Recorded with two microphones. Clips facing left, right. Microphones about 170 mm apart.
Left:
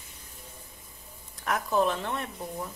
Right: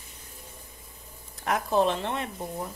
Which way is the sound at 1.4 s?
20° right (ahead or behind).